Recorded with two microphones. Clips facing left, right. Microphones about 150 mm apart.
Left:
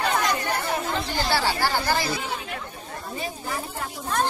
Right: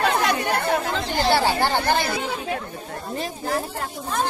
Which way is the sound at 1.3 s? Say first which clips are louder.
Right 3 dB; 25° right (ahead or behind).